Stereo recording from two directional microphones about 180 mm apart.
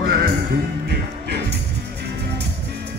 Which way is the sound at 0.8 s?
65° right (ahead or behind).